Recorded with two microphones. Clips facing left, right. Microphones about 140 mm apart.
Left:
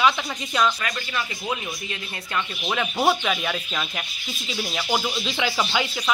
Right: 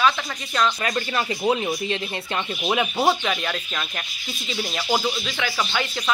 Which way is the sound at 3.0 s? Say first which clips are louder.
Left 4 dB; centre (ahead or behind).